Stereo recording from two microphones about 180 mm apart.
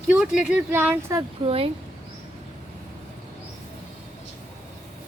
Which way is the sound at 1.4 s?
30° right (ahead or behind).